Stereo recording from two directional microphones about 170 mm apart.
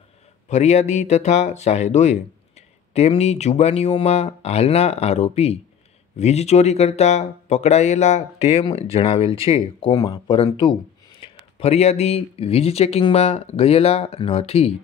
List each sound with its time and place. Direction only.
0.5 s speech: 40° left (ahead or behind)